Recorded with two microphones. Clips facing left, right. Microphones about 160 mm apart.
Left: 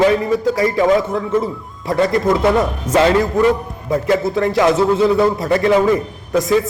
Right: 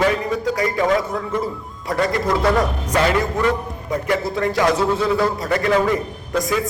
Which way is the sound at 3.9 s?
25° left (ahead or behind).